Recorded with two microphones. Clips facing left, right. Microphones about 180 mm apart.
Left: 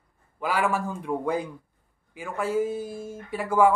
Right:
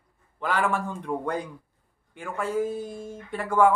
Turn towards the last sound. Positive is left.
turn(degrees=5)  # may be behind; listen again after turning